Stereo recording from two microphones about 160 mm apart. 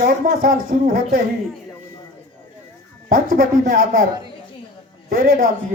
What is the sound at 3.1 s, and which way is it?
Speech, 60° right (ahead or behind).